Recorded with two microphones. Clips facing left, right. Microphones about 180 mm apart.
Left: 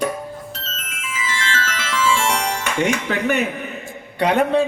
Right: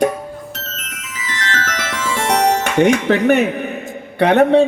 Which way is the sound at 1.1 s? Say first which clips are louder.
Even; 60° right (ahead or behind).